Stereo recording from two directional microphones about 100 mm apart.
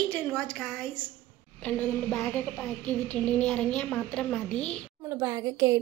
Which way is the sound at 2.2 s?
20° left (ahead or behind).